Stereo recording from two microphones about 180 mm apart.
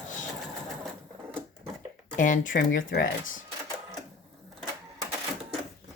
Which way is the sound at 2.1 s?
45° left (ahead or behind).